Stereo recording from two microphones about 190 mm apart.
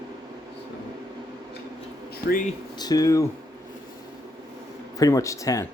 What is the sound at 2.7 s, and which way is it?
Speech, 20° left (ahead or behind).